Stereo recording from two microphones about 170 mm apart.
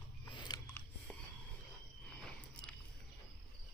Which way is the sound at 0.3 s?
25° left (ahead or behind).